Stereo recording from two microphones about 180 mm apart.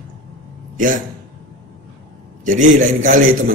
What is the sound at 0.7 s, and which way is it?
Speech, 45° right (ahead or behind).